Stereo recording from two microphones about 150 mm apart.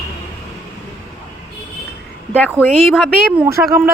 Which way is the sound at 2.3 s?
10° left (ahead or behind).